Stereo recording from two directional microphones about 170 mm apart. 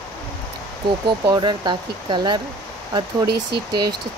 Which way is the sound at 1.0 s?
25° right (ahead or behind).